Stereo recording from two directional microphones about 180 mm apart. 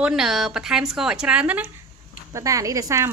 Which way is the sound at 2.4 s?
20° right (ahead or behind).